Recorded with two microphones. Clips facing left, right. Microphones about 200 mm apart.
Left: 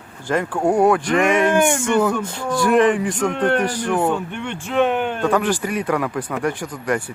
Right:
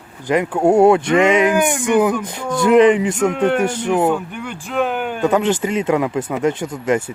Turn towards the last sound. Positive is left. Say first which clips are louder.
# right 4 dB
turn(degrees=-25)  # may be behind; listen again after turning